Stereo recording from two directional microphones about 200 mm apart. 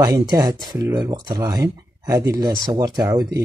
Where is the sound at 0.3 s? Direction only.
20° right (ahead or behind).